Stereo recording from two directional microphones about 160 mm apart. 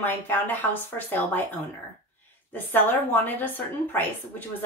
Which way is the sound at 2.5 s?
10° left (ahead or behind).